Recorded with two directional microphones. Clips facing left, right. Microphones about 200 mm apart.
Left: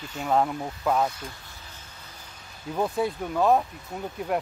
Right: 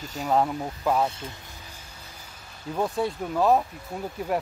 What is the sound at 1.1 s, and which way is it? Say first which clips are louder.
Speech: right 1 dB; 25° right (ahead or behind).